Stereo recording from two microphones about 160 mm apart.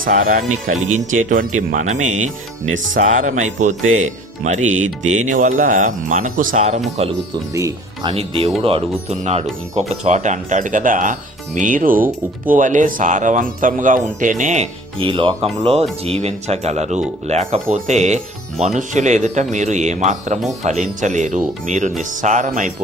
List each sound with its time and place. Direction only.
0.0 s speech: 60° right (ahead or behind)
7.5 s speech: 20° right (ahead or behind)
8.1 s speech: 35° right (ahead or behind)
14.9 s speech: 30° right (ahead or behind); by 22.7 s 55° right (ahead or behind)